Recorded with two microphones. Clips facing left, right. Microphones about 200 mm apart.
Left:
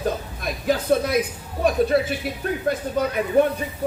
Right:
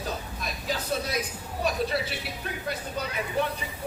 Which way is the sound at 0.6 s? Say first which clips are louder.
Left 11 dB; 55° left (ahead or behind).